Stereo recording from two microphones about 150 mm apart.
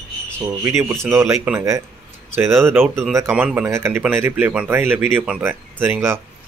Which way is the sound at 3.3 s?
10° right (ahead or behind).